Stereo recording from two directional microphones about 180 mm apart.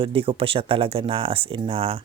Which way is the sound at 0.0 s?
30° right (ahead or behind).